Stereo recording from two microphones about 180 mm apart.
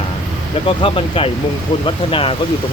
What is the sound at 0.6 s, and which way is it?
Speech, 30° left (ahead or behind).